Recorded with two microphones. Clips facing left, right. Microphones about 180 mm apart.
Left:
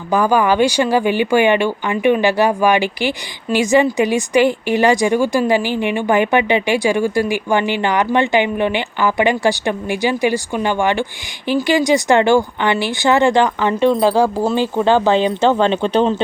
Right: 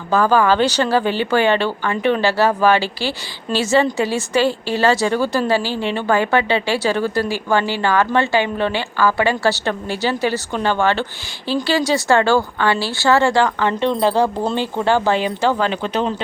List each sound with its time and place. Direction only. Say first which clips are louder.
0.1 s a woman's voice: even; 15° left (ahead or behind)